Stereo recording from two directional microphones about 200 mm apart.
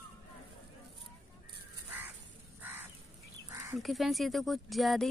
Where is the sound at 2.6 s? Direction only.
10° right (ahead or behind).